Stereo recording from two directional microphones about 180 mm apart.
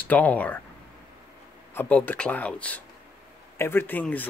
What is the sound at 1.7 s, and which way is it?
Speech, 10° left (ahead or behind).